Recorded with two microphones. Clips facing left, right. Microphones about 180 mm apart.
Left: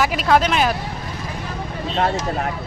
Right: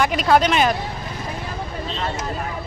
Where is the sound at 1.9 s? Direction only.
60° left (ahead or behind).